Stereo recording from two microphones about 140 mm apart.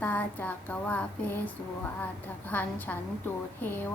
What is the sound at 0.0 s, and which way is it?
Music, 10° left (ahead or behind).